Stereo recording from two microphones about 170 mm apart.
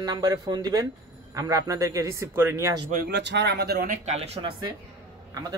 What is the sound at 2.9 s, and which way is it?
Speech, 75° right (ahead or behind).